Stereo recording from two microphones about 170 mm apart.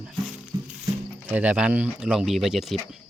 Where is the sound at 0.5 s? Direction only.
20° right (ahead or behind).